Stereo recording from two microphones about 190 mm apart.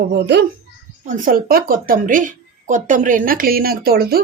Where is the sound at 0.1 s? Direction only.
60° right (ahead or behind).